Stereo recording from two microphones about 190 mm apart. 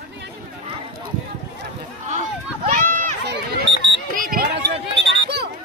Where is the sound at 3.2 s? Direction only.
65° right (ahead or behind).